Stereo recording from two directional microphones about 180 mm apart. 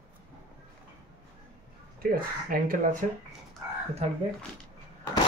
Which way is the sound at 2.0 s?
55° right (ahead or behind).